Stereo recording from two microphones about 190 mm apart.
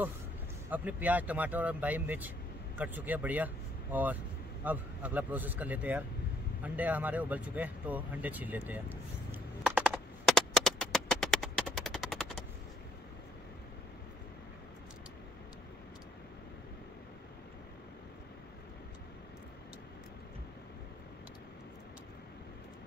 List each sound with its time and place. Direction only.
0.7 s speech: 10° right (ahead or behind)
6.6 s vehicle: 10° right (ahead or behind)